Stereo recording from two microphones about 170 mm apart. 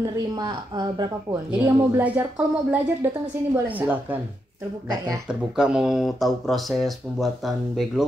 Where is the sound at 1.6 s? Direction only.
10° right (ahead or behind).